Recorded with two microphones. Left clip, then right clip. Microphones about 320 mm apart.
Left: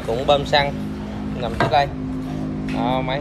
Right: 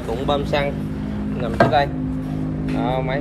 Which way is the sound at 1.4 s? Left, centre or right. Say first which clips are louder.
Right 1 dB; left.